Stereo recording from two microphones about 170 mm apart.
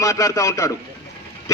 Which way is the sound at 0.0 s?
20° left (ahead or behind).